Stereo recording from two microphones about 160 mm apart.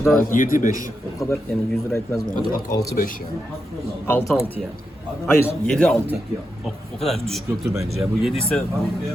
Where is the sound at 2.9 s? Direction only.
65° left (ahead or behind).